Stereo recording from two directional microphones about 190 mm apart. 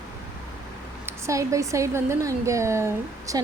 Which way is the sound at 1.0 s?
15° right (ahead or behind).